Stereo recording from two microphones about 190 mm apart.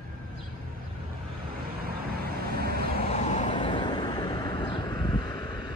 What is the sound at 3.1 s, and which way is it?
Vehicle, 35° left (ahead or behind).